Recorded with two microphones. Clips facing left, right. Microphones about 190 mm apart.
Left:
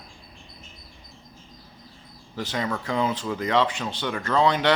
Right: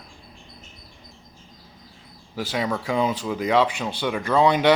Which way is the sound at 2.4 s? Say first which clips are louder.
Right 3 dB; 10° right (ahead or behind).